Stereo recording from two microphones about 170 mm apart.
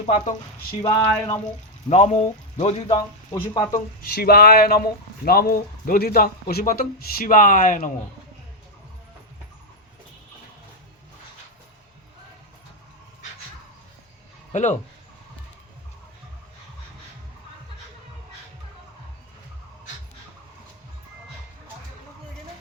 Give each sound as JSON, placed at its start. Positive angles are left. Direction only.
{"t": 0.0, "sound": "speech", "side_deg": 40}
{"t": 0.8, "sound": "a sound", "side_deg": 20}
{"t": 1.9, "sound": "speech", "side_deg": 45}
{"t": 3.7, "sound": "speech", "side_deg": 60}
{"t": 14.5, "sound": "speech", "side_deg": 45}